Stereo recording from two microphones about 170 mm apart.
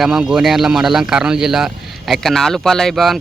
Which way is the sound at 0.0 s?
5° right (ahead or behind).